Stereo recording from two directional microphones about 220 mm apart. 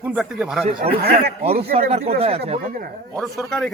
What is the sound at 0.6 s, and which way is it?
Speech, 25° right (ahead or behind).